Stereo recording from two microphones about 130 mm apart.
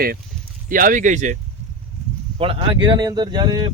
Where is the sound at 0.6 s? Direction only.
90° right; by 1.3 s 70° right (ahead or behind).